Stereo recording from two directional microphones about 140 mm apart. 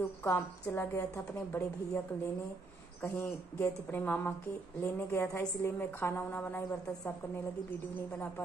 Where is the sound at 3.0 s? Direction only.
20° left (ahead or behind).